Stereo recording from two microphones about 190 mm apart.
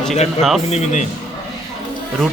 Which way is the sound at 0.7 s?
35° left (ahead or behind).